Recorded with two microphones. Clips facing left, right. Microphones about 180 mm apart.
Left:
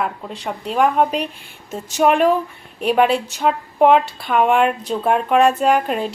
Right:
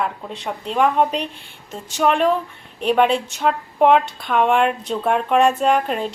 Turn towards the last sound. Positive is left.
turn(degrees=5)  # may be behind; listen again after turning